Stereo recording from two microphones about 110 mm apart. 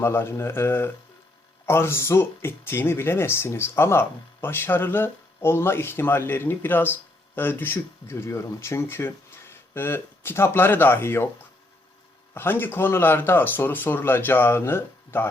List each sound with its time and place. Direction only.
0.0 s speech: 20° left (ahead or behind)
12.3 s speech: 20° left (ahead or behind)